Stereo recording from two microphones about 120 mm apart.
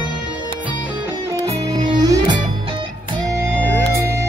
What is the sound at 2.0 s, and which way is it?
Music, 35° right (ahead or behind).